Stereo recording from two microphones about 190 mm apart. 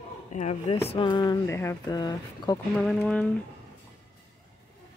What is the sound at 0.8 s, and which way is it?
Speech, 25° left (ahead or behind).